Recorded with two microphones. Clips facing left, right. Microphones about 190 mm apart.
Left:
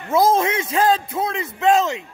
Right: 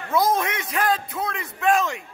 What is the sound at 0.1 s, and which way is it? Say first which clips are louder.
A man's voice: left 5 dB; 25° left (ahead or behind).